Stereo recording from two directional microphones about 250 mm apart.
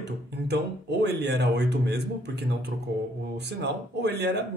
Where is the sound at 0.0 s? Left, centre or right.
Right.